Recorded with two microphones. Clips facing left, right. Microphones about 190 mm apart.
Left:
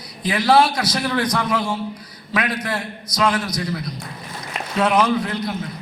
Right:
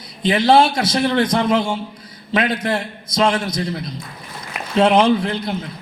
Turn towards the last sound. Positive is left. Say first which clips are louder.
# right 2 dB
turn(degrees=-25)  # may be behind; listen again after turning